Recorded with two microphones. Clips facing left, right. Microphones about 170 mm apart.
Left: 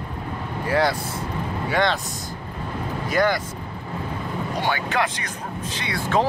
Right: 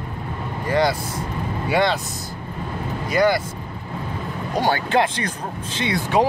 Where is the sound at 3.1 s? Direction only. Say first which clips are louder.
Right 3 dB; 5° right (ahead or behind).